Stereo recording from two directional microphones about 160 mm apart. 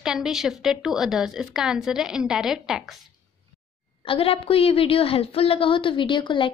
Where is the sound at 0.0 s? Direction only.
5° right (ahead or behind).